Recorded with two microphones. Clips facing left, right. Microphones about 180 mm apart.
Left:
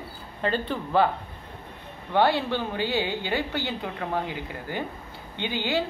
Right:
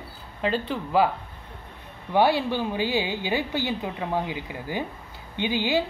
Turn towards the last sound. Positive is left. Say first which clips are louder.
# right 3 dB
turn(degrees=-15)  # may be behind; listen again after turning